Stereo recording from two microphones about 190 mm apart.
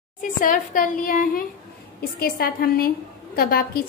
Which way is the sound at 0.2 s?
45° left (ahead or behind).